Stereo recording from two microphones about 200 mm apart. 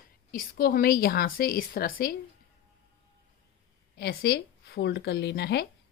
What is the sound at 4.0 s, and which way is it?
Speech, 50° left (ahead or behind).